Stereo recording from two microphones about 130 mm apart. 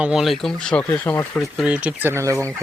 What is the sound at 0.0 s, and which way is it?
Speech, 5° right (ahead or behind).